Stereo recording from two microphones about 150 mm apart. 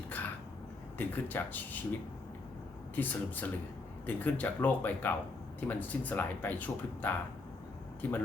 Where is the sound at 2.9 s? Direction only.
10° left (ahead or behind).